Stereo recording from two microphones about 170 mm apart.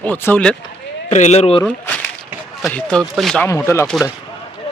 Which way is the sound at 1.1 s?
45° left (ahead or behind).